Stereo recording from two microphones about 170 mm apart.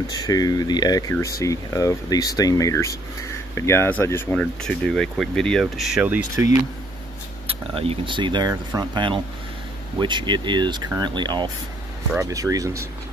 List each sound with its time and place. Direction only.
0.0 s speech: 20° left (ahead or behind); by 6.5 s 15° right (ahead or behind)
7.4 s speech: 35° right (ahead or behind); by 12.7 s 20° right (ahead or behind)